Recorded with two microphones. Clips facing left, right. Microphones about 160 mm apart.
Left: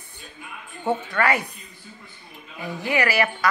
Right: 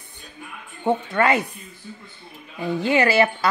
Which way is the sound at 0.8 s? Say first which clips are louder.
Right 3 dB; 20° right (ahead or behind).